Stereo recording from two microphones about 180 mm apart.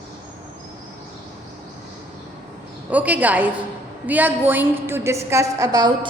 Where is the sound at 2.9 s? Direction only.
10° right (ahead or behind).